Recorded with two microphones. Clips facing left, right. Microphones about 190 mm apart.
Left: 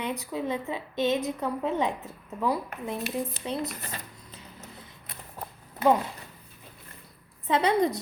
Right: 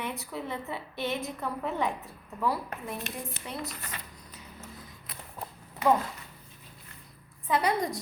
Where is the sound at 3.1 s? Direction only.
35° left (ahead or behind).